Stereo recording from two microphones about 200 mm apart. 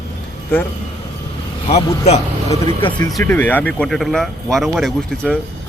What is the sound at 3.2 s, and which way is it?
Speech, 10° left (ahead or behind).